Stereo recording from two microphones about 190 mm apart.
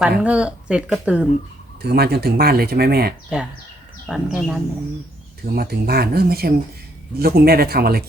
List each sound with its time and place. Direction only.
0.2 s speech: 5° right (ahead or behind)
1.8 s speech: 55° right (ahead or behind)
4.1 s speech: centre (ahead or behind)
5.5 s speech: 50° right (ahead or behind)